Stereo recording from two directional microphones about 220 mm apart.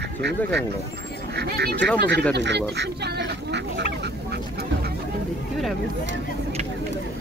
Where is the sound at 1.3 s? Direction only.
45° right (ahead or behind).